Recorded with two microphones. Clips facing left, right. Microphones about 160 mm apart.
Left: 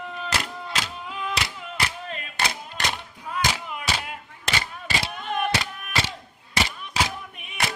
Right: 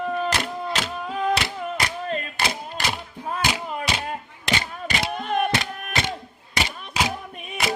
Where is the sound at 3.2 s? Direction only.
40° right (ahead or behind).